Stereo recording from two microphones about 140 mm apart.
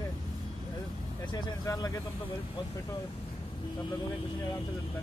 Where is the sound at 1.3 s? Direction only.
25° left (ahead or behind).